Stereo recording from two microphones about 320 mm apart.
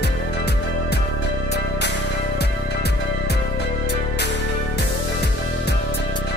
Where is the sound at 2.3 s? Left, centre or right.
Left.